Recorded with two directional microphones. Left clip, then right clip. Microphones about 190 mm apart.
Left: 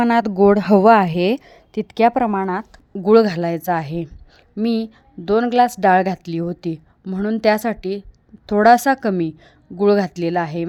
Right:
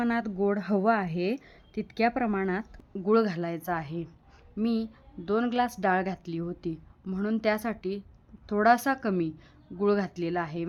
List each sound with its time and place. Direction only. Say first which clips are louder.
0.0 s speech: left 14 dB; 50° left (ahead or behind); by 2.8 s 15° left (ahead or behind)
2.9 s speech: left 12 dB; 40° left (ahead or behind)
7.0 s speech: left 11 dB; 30° left (ahead or behind)